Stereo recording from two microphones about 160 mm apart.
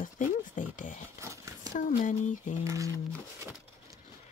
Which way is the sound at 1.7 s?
50° left (ahead or behind).